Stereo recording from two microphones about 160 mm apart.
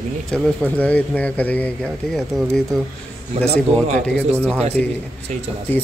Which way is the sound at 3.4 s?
45° right (ahead or behind).